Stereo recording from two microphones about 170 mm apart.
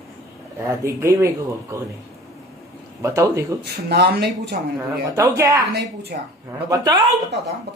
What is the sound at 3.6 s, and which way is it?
Speech, 70° right (ahead or behind).